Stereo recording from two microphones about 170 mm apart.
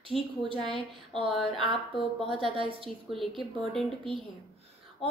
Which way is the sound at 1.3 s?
Centre (ahead or behind).